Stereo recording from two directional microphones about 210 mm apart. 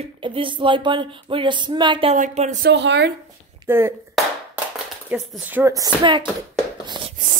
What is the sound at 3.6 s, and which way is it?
Speech, 10° right (ahead or behind).